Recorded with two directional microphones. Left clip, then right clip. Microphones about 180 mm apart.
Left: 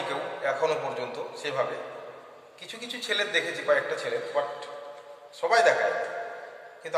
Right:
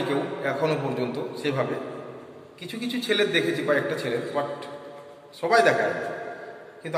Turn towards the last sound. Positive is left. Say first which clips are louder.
# even
turn(degrees=0)  # may be behind; listen again after turning